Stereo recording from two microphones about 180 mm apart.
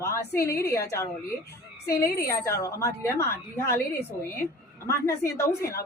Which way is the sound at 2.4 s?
15° left (ahead or behind).